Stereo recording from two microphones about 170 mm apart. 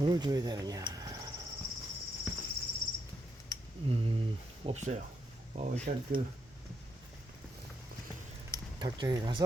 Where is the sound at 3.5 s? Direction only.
20° left (ahead or behind).